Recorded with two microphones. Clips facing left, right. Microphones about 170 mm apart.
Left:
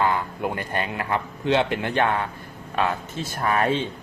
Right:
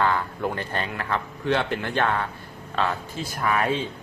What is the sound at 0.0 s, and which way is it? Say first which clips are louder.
A man's voice: even; 15° left (ahead or behind).